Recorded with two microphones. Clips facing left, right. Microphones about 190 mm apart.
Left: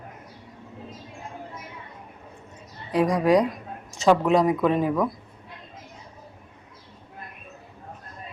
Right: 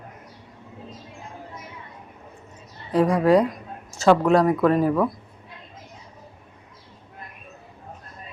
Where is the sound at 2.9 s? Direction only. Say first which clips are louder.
Right 2 dB; 15° left (ahead or behind).